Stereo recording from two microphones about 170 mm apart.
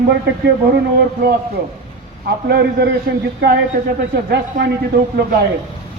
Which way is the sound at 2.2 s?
70° right (ahead or behind).